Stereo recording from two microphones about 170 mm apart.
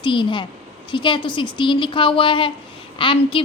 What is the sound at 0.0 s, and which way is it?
A woman's voice, 30° left (ahead or behind).